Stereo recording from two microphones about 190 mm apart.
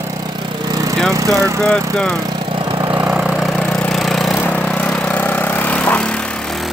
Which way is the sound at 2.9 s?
5° right (ahead or behind).